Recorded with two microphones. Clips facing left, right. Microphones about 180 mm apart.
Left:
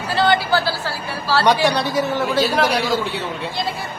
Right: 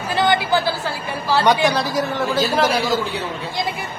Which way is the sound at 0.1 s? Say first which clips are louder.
Even; 20° right (ahead or behind).